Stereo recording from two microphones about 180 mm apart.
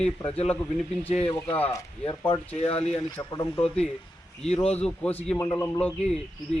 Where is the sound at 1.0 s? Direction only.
5° left (ahead or behind).